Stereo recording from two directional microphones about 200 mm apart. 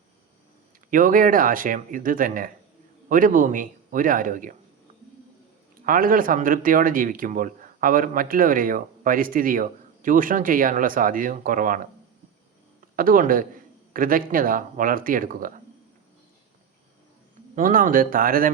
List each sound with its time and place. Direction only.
0.9 s speech: 40° right (ahead or behind)
5.8 s speech: 45° right (ahead or behind)
13.0 s speech: 45° right (ahead or behind)
17.5 s speech: 45° right (ahead or behind)